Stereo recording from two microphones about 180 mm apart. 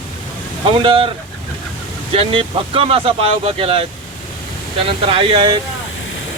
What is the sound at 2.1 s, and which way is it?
Speech, 30° right (ahead or behind).